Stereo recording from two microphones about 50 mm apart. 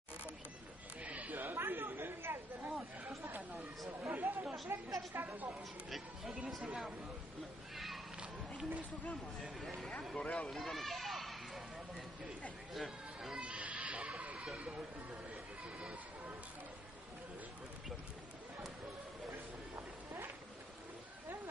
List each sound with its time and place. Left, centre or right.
1.0 s chatter: right
3.3 s a sound: right
4.1 s chatter: right
4.6 s a woman's voice: right
5.9 s speech: centre
7.7 s a sound: centre
8.2 s a sound: right
9.6 s speech: centre
10.1 s speech: left
10.5 s children playing: centre
12.7 s a sound: centre
13.3 s goat: right